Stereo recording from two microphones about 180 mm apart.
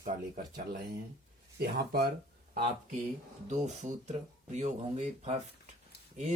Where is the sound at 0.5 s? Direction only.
70° right (ahead or behind).